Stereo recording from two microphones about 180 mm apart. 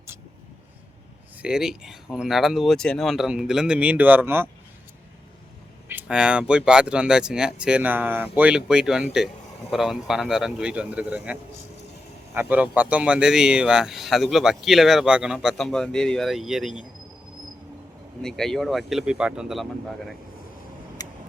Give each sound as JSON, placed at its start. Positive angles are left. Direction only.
{"t": 1.4, "sound": "speech", "side_deg": -5}
{"t": 5.9, "sound": "speech", "side_deg": -5}
{"t": 18.2, "sound": "speech", "side_deg": 0}
{"t": 21.0, "sound": "vehicle", "side_deg": 20}